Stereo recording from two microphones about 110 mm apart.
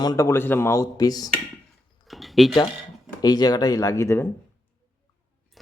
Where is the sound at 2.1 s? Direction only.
Centre (ahead or behind).